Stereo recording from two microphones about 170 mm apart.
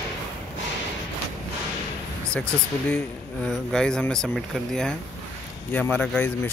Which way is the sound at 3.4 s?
5° left (ahead or behind).